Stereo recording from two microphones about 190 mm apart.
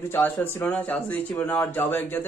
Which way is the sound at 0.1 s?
10° left (ahead or behind).